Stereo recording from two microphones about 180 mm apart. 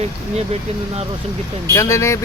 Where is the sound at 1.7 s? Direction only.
15° left (ahead or behind).